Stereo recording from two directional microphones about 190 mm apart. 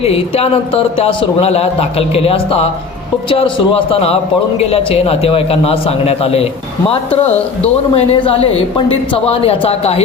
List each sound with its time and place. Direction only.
0.0 s a man's voice: 30° left (ahead or behind)